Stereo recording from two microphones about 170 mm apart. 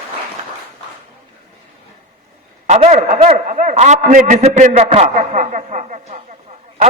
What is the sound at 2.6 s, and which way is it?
A man's voice, 40° right (ahead or behind).